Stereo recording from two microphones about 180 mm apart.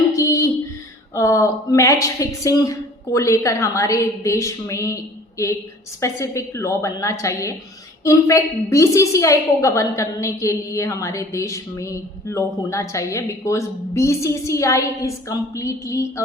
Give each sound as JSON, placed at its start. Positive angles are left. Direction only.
{"t": 0.1, "sound": "a sound", "side_deg": 15}
{"t": 1.1, "sound": "a woman's voice", "side_deg": 15}
{"t": 6.0, "sound": "a woman's voice", "side_deg": 15}